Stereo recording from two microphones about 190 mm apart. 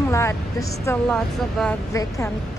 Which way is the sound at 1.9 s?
15° left (ahead or behind).